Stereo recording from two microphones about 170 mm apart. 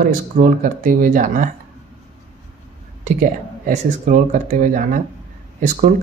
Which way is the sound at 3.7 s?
50° right (ahead or behind).